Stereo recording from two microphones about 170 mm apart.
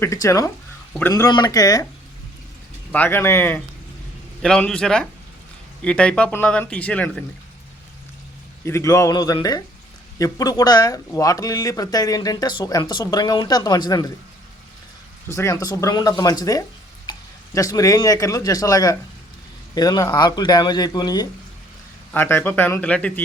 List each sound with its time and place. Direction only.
0.0 s speech: 15° left (ahead or behind)
2.9 s a man's voice: 10° left (ahead or behind)
8.6 s speech: 15° left (ahead or behind)
15.3 s speech: 15° left (ahead or behind)
22.1 s speech: 15° left (ahead or behind)